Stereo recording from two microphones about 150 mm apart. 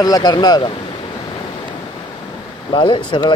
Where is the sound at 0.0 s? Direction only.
25° left (ahead or behind).